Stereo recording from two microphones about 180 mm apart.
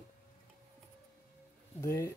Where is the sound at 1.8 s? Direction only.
15° left (ahead or behind).